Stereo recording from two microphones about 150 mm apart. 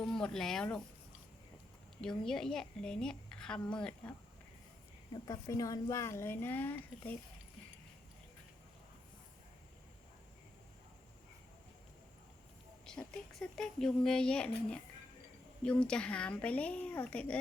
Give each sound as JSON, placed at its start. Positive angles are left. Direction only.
{"t": 0.0, "sound": "speech", "side_deg": 5}
{"t": 2.0, "sound": "a woman's voice", "side_deg": 5}
{"t": 5.1, "sound": "speech", "side_deg": 25}
{"t": 12.8, "sound": "a woman's voice", "side_deg": 5}